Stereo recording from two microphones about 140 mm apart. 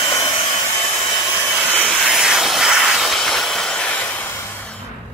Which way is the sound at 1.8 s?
Centre (ahead or behind).